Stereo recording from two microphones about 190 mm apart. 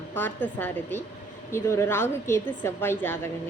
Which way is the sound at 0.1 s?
10° left (ahead or behind).